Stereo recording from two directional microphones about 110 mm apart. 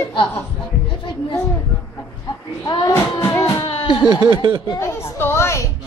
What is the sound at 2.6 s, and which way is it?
Speech, 40° left (ahead or behind).